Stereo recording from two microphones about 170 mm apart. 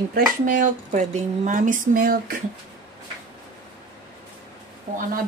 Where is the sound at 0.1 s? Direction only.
50° right (ahead or behind).